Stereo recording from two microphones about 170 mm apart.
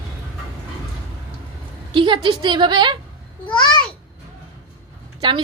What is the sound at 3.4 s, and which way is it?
Babbling, 25° left (ahead or behind).